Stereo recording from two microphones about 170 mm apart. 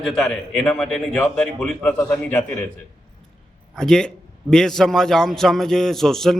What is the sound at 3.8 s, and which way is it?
A man's voice, 5° left (ahead or behind).